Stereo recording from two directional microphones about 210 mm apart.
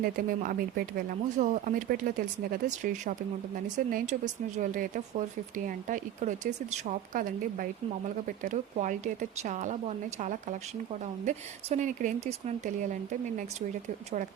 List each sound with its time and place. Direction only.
0.0 s speech: 40° right (ahead or behind)